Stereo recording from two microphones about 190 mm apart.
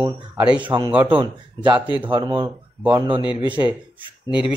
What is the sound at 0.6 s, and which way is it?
Speech, 25° right (ahead or behind).